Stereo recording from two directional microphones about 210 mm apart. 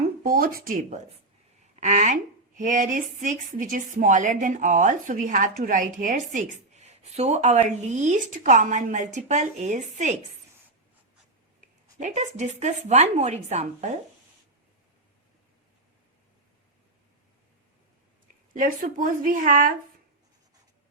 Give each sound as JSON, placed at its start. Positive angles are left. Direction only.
{"t": 0.2, "sound": "a woman's voice", "side_deg": -45}
{"t": 11.9, "sound": "a woman's voice", "side_deg": -35}
{"t": 18.5, "sound": "a woman's voice", "side_deg": -40}